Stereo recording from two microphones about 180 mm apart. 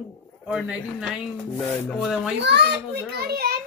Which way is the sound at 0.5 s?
Centre (ahead or behind).